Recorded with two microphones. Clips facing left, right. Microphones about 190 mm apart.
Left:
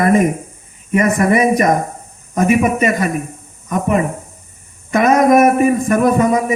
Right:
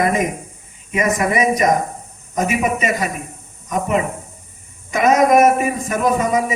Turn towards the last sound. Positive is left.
turn(degrees=55)  # may be behind; listen again after turning